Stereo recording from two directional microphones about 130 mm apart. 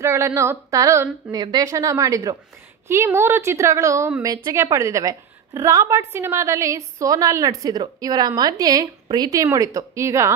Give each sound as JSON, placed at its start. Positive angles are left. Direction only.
{"t": 0.0, "sound": "a woman's voice", "side_deg": -20}